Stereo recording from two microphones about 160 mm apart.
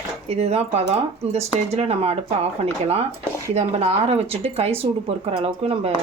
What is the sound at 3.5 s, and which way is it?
Speech, 40° right (ahead or behind).